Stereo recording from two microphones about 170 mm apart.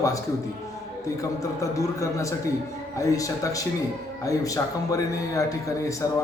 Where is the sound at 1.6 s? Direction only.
20° left (ahead or behind).